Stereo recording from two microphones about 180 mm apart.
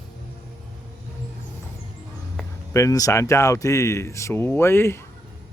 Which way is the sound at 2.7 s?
15° left (ahead or behind).